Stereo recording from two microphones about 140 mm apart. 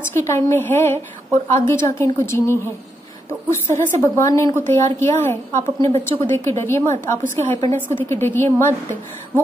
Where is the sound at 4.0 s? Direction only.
20° left (ahead or behind).